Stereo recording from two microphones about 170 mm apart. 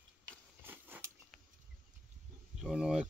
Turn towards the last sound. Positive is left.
turn(degrees=-5)  # may be behind; listen again after turning